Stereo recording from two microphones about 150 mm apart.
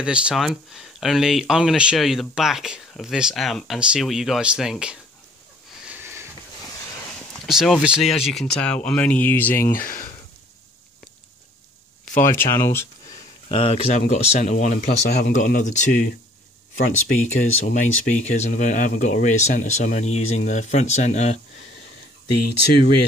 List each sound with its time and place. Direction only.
0.0 s speech: 5° right (ahead or behind)
5.9 s sniff: 15° right (ahead or behind)
7.3 s speech: centre (ahead or behind)
9.8 s speech: 70° left (ahead or behind)
12.2 s speech: 15° left (ahead or behind)
13.5 s speech: 45° left (ahead or behind)